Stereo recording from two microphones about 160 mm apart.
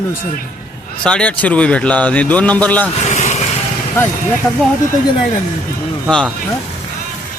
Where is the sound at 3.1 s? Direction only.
45° left (ahead or behind).